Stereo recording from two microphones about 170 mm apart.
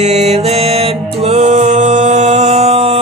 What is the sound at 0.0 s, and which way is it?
Music, 40° right (ahead or behind).